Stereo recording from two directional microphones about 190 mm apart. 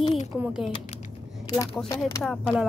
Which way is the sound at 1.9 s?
15° left (ahead or behind).